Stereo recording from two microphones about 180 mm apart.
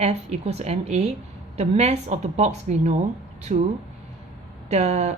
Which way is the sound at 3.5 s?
50° right (ahead or behind).